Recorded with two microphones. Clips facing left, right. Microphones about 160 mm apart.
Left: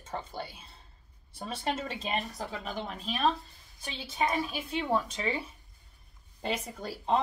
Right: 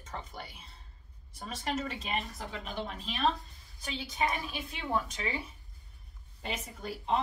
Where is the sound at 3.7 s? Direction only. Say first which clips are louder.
Left 1 dB; 25° left (ahead or behind).